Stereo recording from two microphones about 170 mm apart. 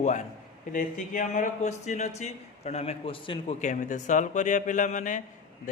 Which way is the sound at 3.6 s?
45° left (ahead or behind).